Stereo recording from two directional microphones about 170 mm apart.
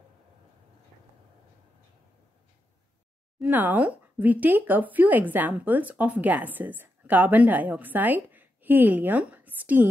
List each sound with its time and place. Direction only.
3.3 s speech: 10° right (ahead or behind)